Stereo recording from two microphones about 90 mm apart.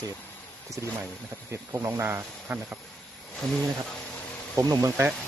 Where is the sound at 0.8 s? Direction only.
30° right (ahead or behind).